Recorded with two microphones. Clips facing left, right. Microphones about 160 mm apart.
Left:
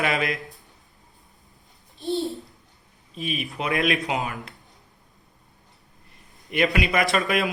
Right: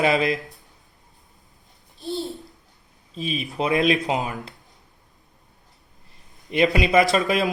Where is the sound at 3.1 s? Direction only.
30° right (ahead or behind).